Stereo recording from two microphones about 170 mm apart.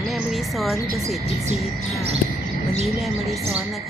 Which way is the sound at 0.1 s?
Centre (ahead or behind).